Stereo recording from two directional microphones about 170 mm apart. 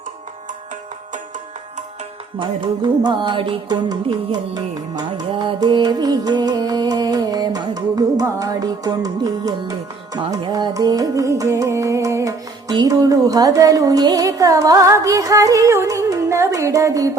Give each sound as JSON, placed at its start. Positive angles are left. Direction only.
{"t": 2.4, "sound": "music", "side_deg": -25}